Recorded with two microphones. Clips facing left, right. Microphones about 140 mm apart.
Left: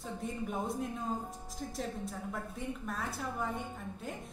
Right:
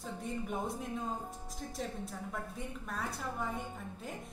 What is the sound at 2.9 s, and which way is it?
A woman's voice, centre (ahead or behind).